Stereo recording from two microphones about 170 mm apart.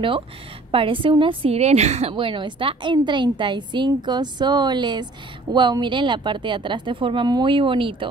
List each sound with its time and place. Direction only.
0.7 s a woman's voice: 30° right (ahead or behind)